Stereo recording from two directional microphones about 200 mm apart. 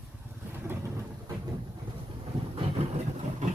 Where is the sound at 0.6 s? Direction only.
15° right (ahead or behind).